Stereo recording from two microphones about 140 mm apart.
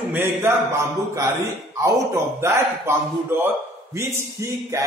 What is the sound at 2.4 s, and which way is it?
A man's voice, 15° right (ahead or behind).